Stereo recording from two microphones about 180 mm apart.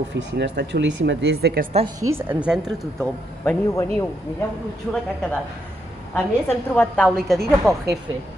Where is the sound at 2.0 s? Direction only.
15° right (ahead or behind).